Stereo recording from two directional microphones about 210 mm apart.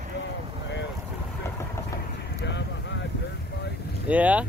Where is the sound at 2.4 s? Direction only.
55° left (ahead or behind).